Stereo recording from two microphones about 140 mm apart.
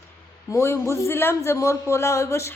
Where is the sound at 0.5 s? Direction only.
20° left (ahead or behind).